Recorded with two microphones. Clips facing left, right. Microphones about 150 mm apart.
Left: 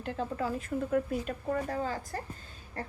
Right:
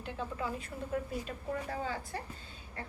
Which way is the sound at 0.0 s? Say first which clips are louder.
Left 5 dB; 40° left (ahead or behind).